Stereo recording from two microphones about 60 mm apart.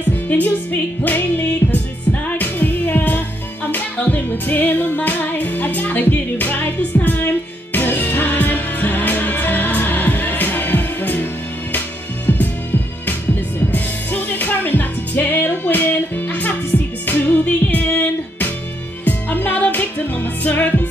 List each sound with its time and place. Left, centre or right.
0.3 s music: left
12.3 s music: left
13.7 s music: left
19.0 s music: left